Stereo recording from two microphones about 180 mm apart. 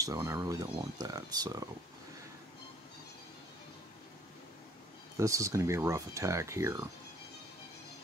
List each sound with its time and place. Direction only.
0.0 s speech: 20° right (ahead or behind)
5.1 s speech: 20° right (ahead or behind)